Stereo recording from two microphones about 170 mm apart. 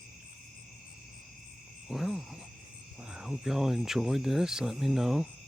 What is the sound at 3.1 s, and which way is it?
Speech, 5° right (ahead or behind).